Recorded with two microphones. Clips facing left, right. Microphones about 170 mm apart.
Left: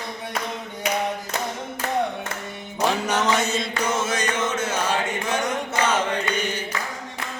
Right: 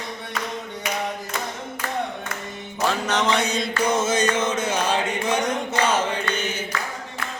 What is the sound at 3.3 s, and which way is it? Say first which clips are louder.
Mantra: even; centre (ahead or behind).